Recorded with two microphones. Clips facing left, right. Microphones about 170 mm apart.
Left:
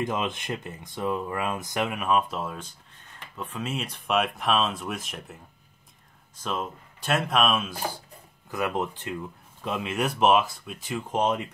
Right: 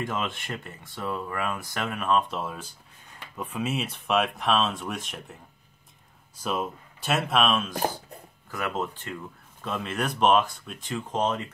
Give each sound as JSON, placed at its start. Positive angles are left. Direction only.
{"t": 0.0, "sound": "speech", "side_deg": 15}
{"t": 6.4, "sound": "speech", "side_deg": -5}
{"t": 8.5, "sound": "speech", "side_deg": 15}